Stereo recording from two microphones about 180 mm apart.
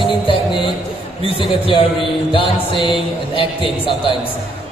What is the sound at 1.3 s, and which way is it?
A man's voice, 30° left (ahead or behind).